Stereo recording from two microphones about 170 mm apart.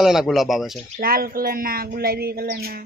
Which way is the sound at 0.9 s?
60° right (ahead or behind).